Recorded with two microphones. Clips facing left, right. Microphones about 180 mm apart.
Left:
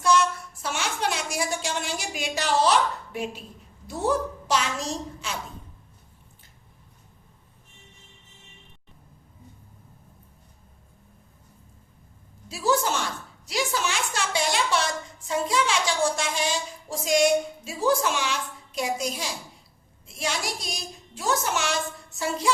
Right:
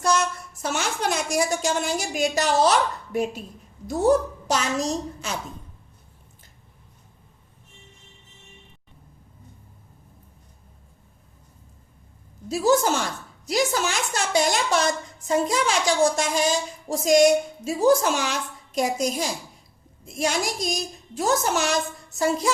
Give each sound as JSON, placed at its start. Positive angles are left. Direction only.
{"t": 0.0, "sound": "a woman's voice", "side_deg": -45}
{"t": 12.5, "sound": "a child's voice", "side_deg": -40}